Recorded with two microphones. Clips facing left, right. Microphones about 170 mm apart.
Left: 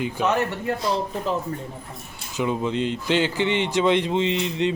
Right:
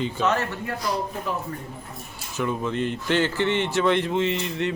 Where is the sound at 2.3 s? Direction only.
20° left (ahead or behind).